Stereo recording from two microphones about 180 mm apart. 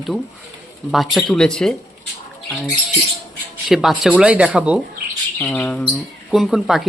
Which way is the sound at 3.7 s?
Centre (ahead or behind).